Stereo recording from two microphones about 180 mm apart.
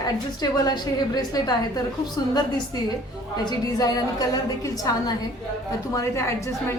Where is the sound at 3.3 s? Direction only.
20° left (ahead or behind).